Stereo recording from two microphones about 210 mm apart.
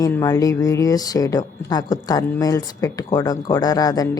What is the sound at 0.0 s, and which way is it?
A woman's voice, 15° left (ahead or behind).